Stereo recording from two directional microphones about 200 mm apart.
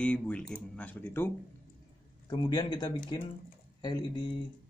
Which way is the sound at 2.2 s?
20° left (ahead or behind).